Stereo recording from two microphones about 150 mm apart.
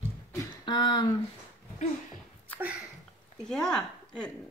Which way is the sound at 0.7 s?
30° left (ahead or behind).